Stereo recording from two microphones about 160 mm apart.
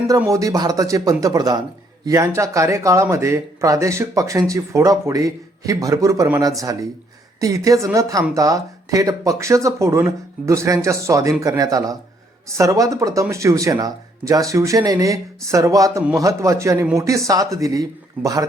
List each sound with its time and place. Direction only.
0.3 s speech: 20° right (ahead or behind)